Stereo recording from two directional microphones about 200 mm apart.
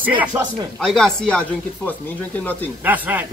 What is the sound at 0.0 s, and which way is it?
Speech, 10° right (ahead or behind).